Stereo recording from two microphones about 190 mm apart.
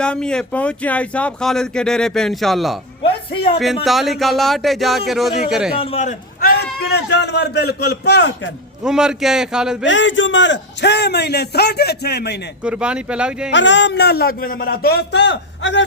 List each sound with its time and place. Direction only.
0.0 s speech: 5° left (ahead or behind)
3.0 s speech: 30° left (ahead or behind)
3.8 s speech: centre (ahead or behind)
5.8 s a man's voice: 35° left (ahead or behind); by 8.5 s 70° left (ahead or behind)
8.8 s speech: 5° right (ahead or behind)
9.8 s a man's voice: 75° left (ahead or behind)
12.6 s speech: 5° right (ahead or behind)
13.5 s a man's voice: 70° left (ahead or behind)